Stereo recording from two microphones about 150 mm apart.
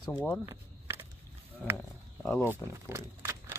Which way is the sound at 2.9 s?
20° right (ahead or behind).